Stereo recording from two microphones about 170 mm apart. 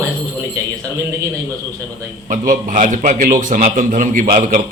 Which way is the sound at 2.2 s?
50° right (ahead or behind).